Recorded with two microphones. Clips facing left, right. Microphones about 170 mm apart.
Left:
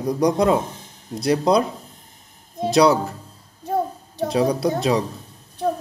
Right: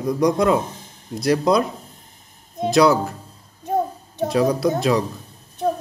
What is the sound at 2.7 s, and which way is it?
Speech, 30° left (ahead or behind).